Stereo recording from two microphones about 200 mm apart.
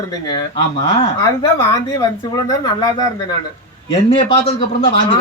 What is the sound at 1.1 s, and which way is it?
Speech, 15° left (ahead or behind).